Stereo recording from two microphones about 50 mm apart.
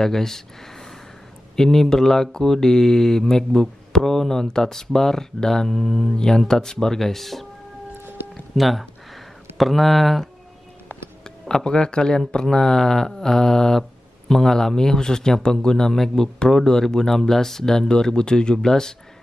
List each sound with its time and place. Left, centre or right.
0.0 s speech: centre
1.6 s speech: centre
8.5 s speech: centre
11.2 s speech: centre